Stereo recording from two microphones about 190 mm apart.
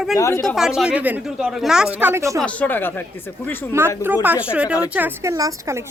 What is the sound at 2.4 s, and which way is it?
Speech, 5° left (ahead or behind).